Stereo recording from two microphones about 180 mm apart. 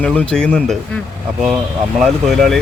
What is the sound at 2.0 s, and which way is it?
Speech, centre (ahead or behind).